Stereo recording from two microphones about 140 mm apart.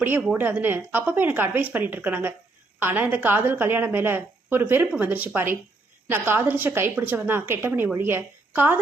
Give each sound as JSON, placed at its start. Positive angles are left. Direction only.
{"t": 0.0, "sound": "a woman's voice", "side_deg": -15}